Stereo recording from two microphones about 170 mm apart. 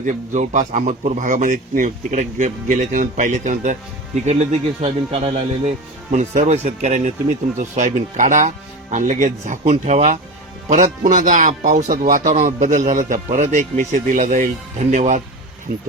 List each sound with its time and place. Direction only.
0.0 s speech: 45° right (ahead or behind)
4.8 s speech: 35° right (ahead or behind); by 15.8 s 55° right (ahead or behind)